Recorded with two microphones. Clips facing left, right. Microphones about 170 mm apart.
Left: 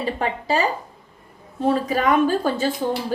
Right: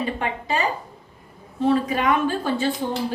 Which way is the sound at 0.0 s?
35° left (ahead or behind).